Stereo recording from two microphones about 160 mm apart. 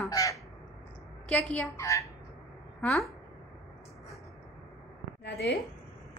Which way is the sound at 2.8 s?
5° left (ahead or behind).